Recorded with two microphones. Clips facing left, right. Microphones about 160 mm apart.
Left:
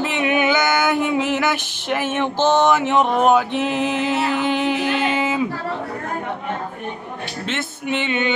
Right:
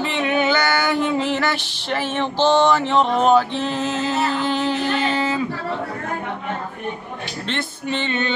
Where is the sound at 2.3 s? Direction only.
50° left (ahead or behind).